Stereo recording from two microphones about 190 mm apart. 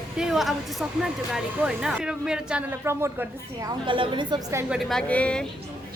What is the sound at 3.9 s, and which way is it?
Speech, 25° right (ahead or behind).